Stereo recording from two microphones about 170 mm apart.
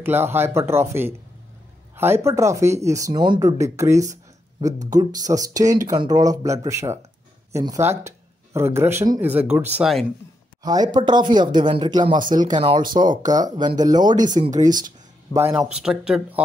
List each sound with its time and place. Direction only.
0.0 s speech: 15° right (ahead or behind)
10.6 s speech: 25° right (ahead or behind)
14.4 s speech: 45° right (ahead or behind)
15.3 s speech: 30° left (ahead or behind)
15.7 s speech: 5° right (ahead or behind)